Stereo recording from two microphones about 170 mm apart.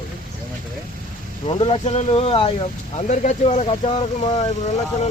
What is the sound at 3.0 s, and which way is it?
Speech, 45° left (ahead or behind).